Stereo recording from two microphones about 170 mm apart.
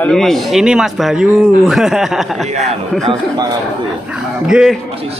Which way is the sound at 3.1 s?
25° right (ahead or behind).